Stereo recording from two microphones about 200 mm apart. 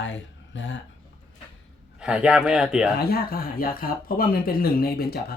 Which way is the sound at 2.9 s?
50° left (ahead or behind).